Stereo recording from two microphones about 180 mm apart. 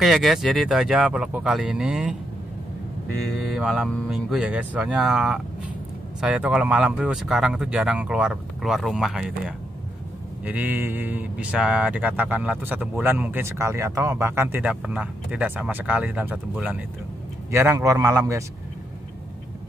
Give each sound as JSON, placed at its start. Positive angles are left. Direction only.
{"t": 0.0, "sound": "speech", "side_deg": 0}
{"t": 3.5, "sound": "speech", "side_deg": 0}
{"t": 10.4, "sound": "speech", "side_deg": -10}